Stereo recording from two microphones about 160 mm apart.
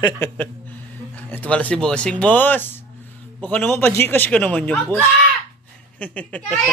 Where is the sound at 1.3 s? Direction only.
10° left (ahead or behind).